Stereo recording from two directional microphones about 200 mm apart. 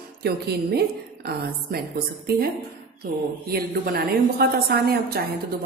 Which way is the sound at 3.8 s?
50° right (ahead or behind).